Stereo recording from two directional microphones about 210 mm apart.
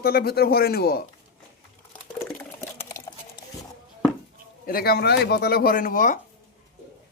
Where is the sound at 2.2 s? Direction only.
10° left (ahead or behind).